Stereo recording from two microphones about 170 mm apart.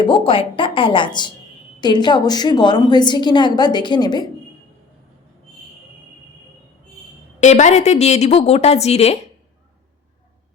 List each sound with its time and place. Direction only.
0.0 s a woman's voice: 30° left (ahead or behind)
7.3 s a woman's voice: 45° left (ahead or behind)